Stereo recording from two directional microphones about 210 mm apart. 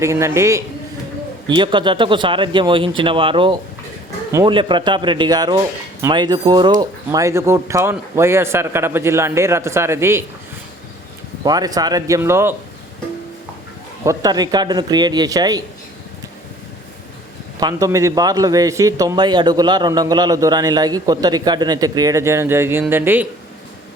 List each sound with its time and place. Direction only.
0.0 s a man's voice: 15° right (ahead or behind)
11.4 s a man's voice: 20° right (ahead or behind)
14.0 s speech: 15° right (ahead or behind)
17.6 s a man's voice: 15° right (ahead or behind)